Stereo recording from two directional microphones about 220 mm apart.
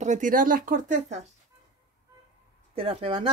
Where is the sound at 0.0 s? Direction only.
35° right (ahead or behind).